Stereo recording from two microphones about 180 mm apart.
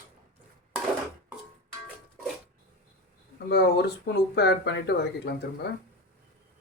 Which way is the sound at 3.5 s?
65° left (ahead or behind).